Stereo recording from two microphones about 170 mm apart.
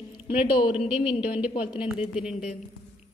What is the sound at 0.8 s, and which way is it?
A woman's voice, 5° right (ahead or behind).